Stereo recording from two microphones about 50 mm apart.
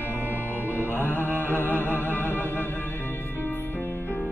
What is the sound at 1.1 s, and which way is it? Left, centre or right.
Music, left.